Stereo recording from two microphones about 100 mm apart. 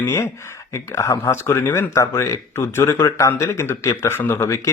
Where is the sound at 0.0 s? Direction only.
25° left (ahead or behind).